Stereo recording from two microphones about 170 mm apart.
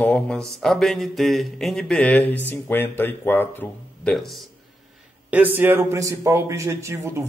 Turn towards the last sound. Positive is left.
turn(degrees=-15)  # may be behind; listen again after turning